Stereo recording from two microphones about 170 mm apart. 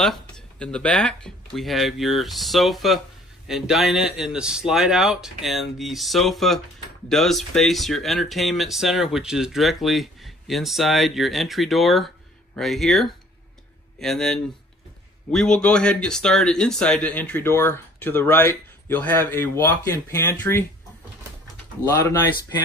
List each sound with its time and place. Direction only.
0.0 s speech: 5° left (ahead or behind)
21.8 s speech: 15° left (ahead or behind)